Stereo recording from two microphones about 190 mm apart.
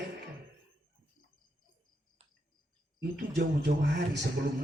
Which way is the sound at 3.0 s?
65° right (ahead or behind).